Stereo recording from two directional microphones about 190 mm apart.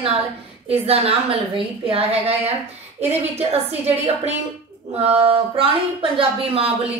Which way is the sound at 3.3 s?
35° right (ahead or behind).